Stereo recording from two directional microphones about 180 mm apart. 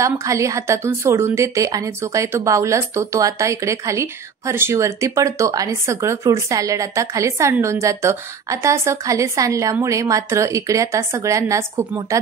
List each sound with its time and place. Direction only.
0.0 s a woman's voice: 15° right (ahead or behind)